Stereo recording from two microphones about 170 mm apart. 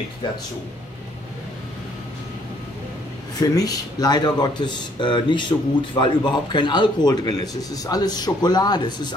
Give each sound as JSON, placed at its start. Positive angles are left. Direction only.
{"t": 3.3, "sound": "speech", "side_deg": 20}